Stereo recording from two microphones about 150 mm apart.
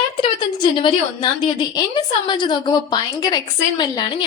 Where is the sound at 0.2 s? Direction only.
30° left (ahead or behind).